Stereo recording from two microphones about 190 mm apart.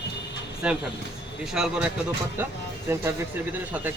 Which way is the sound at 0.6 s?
5° right (ahead or behind).